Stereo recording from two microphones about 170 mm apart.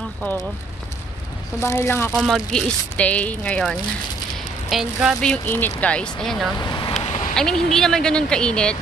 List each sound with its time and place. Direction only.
0.2 s speech: 15° left (ahead or behind)
1.6 s speech: 15° left (ahead or behind)
2.1 s speech: centre (ahead or behind)
6.6 s vehicle: 25° left (ahead or behind)
7.0 s a sound: 40° left (ahead or behind)
7.3 s speech: 5° left (ahead or behind)